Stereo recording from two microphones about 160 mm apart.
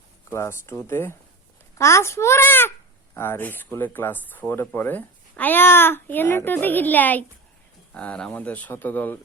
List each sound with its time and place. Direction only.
0.3 s speech: 15° left (ahead or behind)